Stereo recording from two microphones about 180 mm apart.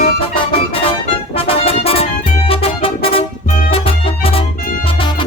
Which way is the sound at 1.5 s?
30° left (ahead or behind).